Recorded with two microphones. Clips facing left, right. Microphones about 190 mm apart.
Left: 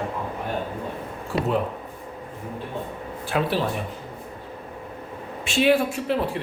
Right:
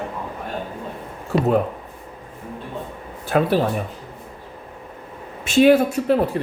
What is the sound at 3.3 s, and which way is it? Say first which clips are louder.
Speech: right 6 dB; 45° right (ahead or behind).